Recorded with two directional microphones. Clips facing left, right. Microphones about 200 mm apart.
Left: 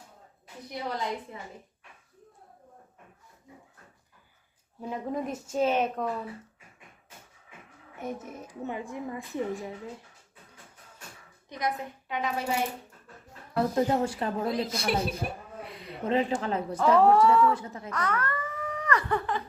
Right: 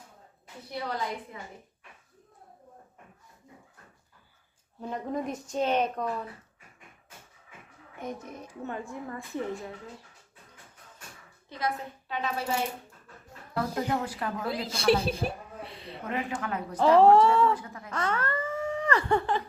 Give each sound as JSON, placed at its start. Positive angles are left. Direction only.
{"t": 0.7, "sound": "a woman's voice", "side_deg": 20}
{"t": 4.8, "sound": "a woman's voice", "side_deg": 5}
{"t": 7.9, "sound": "a woman's voice", "side_deg": 5}
{"t": 8.6, "sound": "a woman's voice", "side_deg": 15}
{"t": 11.4, "sound": "a woman's voice", "side_deg": 15}
{"t": 13.6, "sound": "a woman's voice", "side_deg": 25}
{"t": 14.9, "sound": "a woman's voice", "side_deg": -30}
{"t": 15.6, "sound": "a sound", "side_deg": -30}
{"t": 16.0, "sound": "a woman's voice", "side_deg": 25}
{"t": 16.7, "sound": "speech", "side_deg": -30}
{"t": 17.5, "sound": "a woman's voice", "side_deg": 25}
{"t": 17.9, "sound": "a sound", "side_deg": -30}